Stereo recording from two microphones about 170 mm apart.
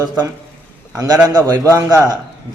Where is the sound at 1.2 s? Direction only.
20° right (ahead or behind).